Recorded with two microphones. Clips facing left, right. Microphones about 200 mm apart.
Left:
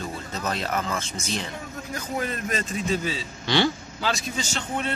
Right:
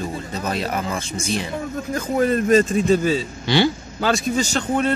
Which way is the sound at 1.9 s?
40° right (ahead or behind).